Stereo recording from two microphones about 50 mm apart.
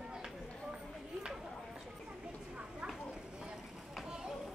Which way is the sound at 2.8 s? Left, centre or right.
Right.